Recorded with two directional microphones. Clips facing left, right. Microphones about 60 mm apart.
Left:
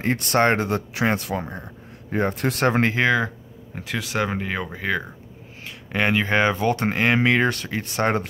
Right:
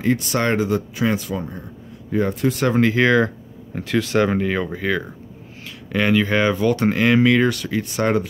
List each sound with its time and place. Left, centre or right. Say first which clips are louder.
0.0 s speech: even; left
2.3 s speech: right 1 dB; left
3.7 s speech: right 7 dB; centre; by 8.3 s left